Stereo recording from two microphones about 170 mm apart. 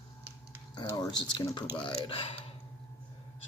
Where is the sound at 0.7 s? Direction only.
20° left (ahead or behind).